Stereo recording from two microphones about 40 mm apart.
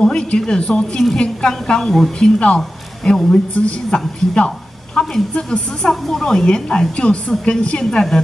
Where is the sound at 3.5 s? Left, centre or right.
Left.